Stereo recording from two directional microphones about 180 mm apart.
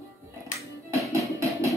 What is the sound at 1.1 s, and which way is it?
Music, 15° right (ahead or behind).